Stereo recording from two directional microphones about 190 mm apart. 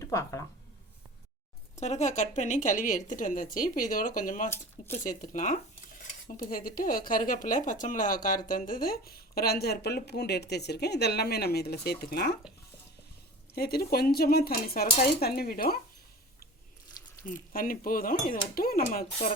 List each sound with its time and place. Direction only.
0.0 s speech: 15° left (ahead or behind)
1.7 s speech: 35° left (ahead or behind); by 12.4 s 55° left (ahead or behind)
13.6 s speech: 55° left (ahead or behind)
17.2 s speech: 50° left (ahead or behind)